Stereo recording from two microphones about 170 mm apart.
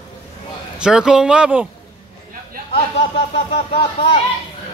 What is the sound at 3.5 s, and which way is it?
Speech, 35° left (ahead or behind).